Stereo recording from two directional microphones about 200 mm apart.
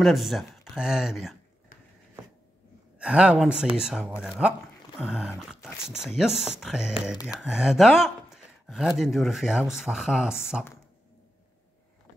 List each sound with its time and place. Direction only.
0.0 s speech: centre (ahead or behind)
3.0 s speech: 5° right (ahead or behind)